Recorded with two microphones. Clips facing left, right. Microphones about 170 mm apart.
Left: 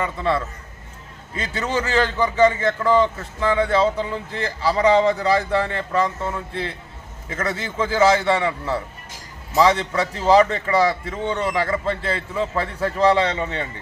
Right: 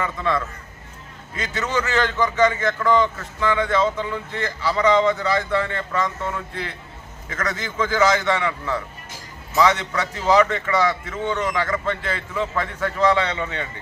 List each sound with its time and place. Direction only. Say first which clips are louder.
0.0 s a man's voice: left 1 dB; 30° left (ahead or behind)